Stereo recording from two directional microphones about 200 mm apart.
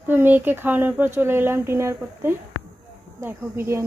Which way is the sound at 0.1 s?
10° right (ahead or behind).